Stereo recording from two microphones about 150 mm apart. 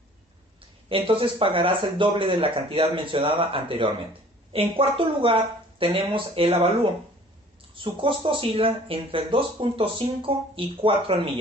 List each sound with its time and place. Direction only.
0.8 s speech: 40° right (ahead or behind)